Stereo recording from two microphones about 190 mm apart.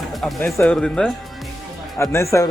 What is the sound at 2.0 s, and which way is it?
Speech, 15° left (ahead or behind).